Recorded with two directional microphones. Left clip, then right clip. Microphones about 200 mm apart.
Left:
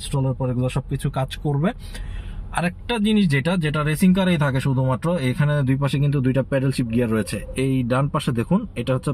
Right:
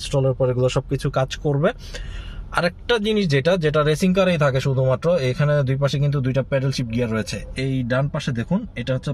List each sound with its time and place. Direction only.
0.1 s speech: 30° right (ahead or behind); by 8.5 s centre (ahead or behind)